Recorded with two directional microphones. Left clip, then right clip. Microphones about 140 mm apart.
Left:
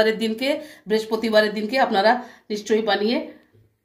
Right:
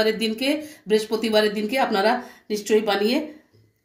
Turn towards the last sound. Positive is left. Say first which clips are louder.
# even
turn(degrees=-15)  # may be behind; listen again after turning